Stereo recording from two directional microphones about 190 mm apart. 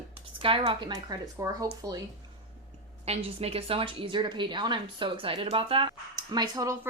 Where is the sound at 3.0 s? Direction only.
30° right (ahead or behind).